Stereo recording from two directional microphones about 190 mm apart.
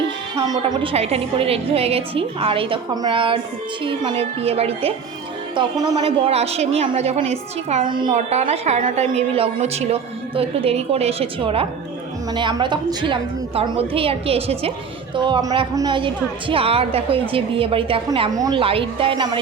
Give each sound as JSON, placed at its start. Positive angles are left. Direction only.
{"t": 0.7, "sound": "a woman's voice", "side_deg": -25}
{"t": 5.5, "sound": "a woman's voice", "side_deg": -20}
{"t": 6.2, "sound": "a woman's voice", "side_deg": -35}
{"t": 7.9, "sound": "a woman's voice", "side_deg": -25}